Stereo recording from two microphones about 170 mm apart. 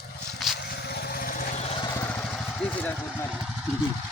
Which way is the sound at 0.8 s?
65° left (ahead or behind).